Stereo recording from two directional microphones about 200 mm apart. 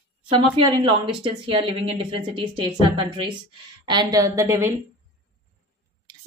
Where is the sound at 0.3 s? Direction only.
25° right (ahead or behind).